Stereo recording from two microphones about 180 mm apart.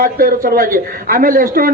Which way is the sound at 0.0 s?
50° right (ahead or behind).